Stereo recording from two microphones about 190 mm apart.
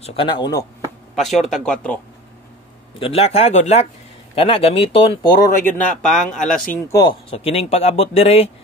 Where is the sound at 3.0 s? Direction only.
30° left (ahead or behind).